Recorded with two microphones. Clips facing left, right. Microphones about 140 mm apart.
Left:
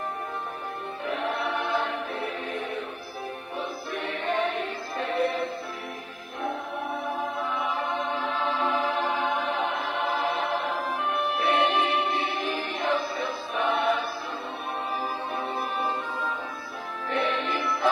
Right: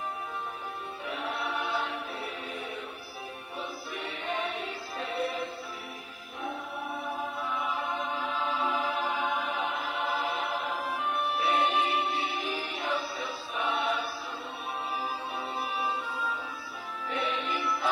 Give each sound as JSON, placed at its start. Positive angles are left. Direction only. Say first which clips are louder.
{"t": 1.0, "sound": "choir", "louder": "left 6 dB", "side_deg": 60}
{"t": 3.5, "sound": "music", "louder": "left 5 dB", "side_deg": 60}
{"t": 7.3, "sound": "music", "louder": "left 4 dB", "side_deg": 65}
{"t": 15.3, "sound": "music", "louder": "left 4 dB", "side_deg": 55}
{"t": 17.1, "sound": "music", "louder": "left 5 dB", "side_deg": 65}